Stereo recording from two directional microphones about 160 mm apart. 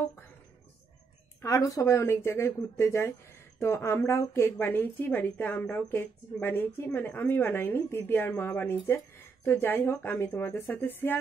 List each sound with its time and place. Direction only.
1.4 s speech: 20° left (ahead or behind)